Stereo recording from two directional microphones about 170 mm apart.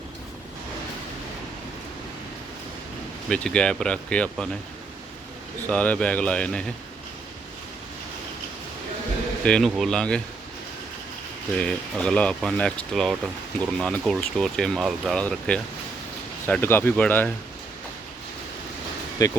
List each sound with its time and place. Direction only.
3.2 s speech: 5° left (ahead or behind)
5.6 s a man's voice: 10° left (ahead or behind)
9.4 s speech: 5° left (ahead or behind)
11.5 s a man's voice: 5° left (ahead or behind)
19.2 s speech: 20° left (ahead or behind)